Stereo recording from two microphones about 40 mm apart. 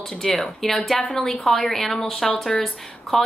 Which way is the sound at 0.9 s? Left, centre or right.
Left.